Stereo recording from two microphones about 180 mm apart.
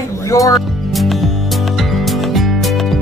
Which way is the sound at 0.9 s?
Centre (ahead or behind).